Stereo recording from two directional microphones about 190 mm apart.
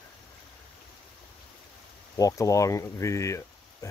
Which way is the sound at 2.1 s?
20° left (ahead or behind).